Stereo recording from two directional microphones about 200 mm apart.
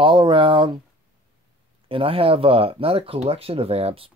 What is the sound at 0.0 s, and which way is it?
Speech, 25° right (ahead or behind).